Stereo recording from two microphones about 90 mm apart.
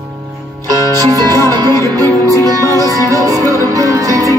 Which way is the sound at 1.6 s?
40° right (ahead or behind).